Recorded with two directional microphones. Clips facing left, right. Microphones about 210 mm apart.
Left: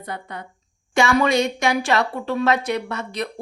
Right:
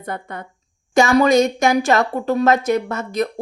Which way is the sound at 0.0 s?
50° right (ahead or behind).